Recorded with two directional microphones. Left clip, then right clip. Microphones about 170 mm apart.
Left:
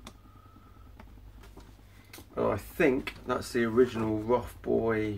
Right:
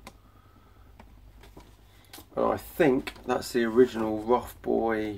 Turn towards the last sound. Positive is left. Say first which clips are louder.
# right 1 dB
turn(degrees=-30)  # may be behind; listen again after turning